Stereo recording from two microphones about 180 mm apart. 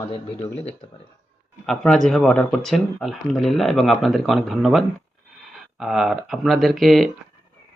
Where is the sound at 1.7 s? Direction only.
Centre (ahead or behind).